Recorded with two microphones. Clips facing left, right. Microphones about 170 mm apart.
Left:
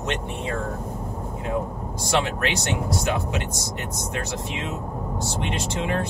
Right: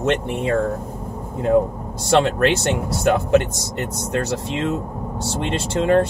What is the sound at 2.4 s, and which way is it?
Speech, 55° right (ahead or behind).